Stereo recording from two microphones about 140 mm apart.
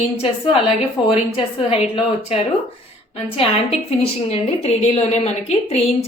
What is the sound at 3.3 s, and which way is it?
A woman's voice, 45° left (ahead or behind).